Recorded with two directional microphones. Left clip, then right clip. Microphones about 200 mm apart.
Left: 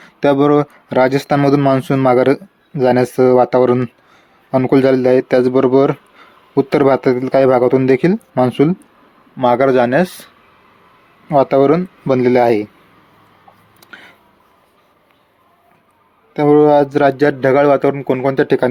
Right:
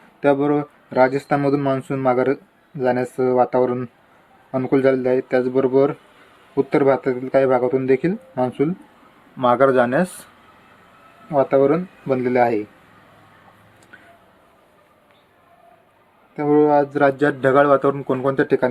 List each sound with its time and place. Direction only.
0.2 s speech: 50° left (ahead or behind)
9.4 s speech: 30° left (ahead or behind)
11.3 s speech: 45° left (ahead or behind)
16.3 s speech: 45° left (ahead or behind)